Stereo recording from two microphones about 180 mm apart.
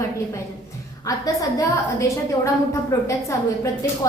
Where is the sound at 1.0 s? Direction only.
20° left (ahead or behind).